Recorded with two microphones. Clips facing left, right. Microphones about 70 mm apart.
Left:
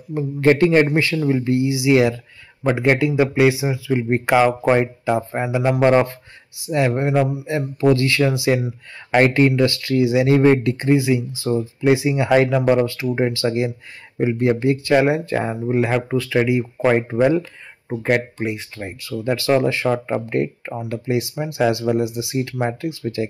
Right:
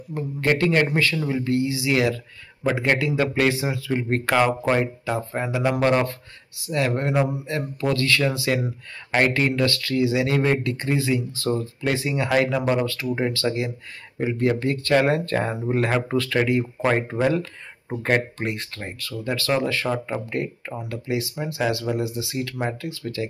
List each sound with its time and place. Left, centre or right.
0.1 s speech: left
7.2 s speech: centre
7.4 s speech: left
17.2 s speech: centre
18.0 s speech: centre
18.9 s speech: left